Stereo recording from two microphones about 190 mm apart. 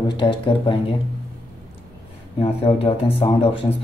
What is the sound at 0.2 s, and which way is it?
Speech, 25° left (ahead or behind).